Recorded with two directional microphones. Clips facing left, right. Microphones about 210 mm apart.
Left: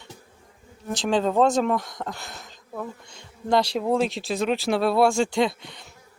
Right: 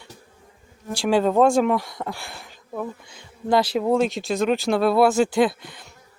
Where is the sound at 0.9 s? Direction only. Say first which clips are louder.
Right 3 dB; 5° right (ahead or behind).